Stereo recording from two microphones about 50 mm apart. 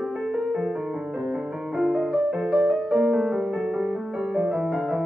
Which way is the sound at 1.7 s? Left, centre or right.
Centre.